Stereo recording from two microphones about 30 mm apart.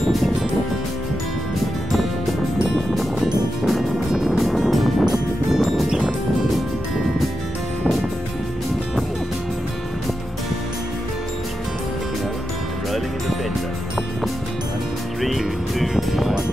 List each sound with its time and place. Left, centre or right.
4.1 s music: centre
4.6 s music: centre
5.0 s music: centre
15.2 s music: centre